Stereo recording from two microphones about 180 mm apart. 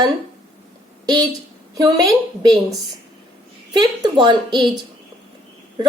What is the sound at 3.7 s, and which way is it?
Speech, 20° right (ahead or behind).